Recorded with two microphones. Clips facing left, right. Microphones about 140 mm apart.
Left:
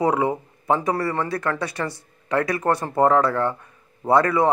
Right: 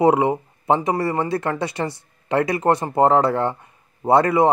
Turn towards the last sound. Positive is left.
turn(degrees=-20)  # may be behind; listen again after turning